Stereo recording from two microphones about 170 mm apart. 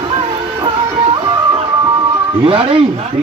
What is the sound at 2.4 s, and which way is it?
Speech, 30° right (ahead or behind).